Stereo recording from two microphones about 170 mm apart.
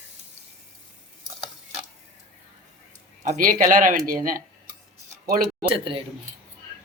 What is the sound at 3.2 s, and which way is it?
Speech, 50° right (ahead or behind).